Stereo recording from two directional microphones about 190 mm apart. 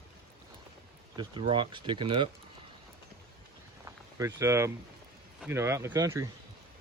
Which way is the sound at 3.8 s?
15° right (ahead or behind).